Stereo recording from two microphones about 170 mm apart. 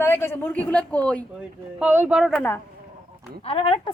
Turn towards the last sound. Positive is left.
turn(degrees=35)  # may be behind; listen again after turning